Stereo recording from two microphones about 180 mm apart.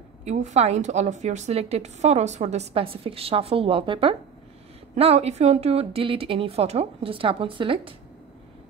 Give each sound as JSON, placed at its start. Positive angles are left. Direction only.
{"t": 0.2, "sound": "a woman's voice", "side_deg": -40}